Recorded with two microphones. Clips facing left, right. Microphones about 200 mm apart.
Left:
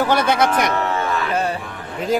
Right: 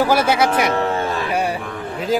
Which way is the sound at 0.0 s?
10° right (ahead or behind).